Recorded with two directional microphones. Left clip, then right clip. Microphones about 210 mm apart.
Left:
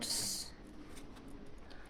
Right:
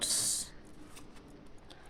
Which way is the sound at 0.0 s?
30° right (ahead or behind).